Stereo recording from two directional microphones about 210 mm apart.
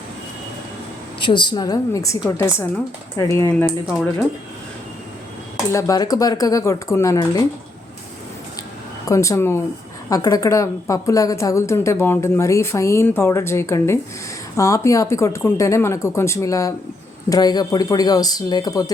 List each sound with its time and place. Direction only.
1.2 s a woman's voice: 20° left (ahead or behind)
3.7 s speech: centre (ahead or behind)
5.7 s a woman's voice: 15° left (ahead or behind)
9.0 s a woman's voice: 15° left (ahead or behind)